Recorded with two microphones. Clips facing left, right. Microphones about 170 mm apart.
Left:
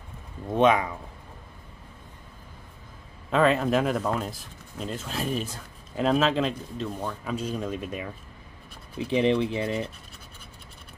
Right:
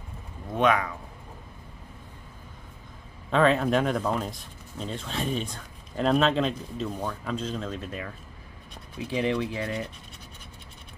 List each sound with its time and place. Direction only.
0.6 s speech: 20° left (ahead or behind)
3.3 s speech: centre (ahead or behind); by 9.8 s 25° left (ahead or behind)